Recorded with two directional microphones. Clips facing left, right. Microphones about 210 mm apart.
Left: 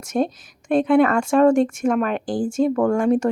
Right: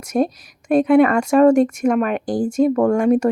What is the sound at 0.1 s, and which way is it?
Speech, 5° right (ahead or behind).